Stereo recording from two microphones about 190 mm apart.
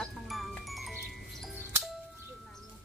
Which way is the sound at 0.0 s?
Centre (ahead or behind).